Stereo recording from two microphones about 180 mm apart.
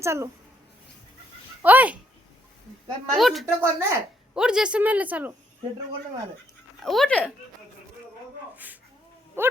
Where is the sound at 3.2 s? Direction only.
Centre (ahead or behind).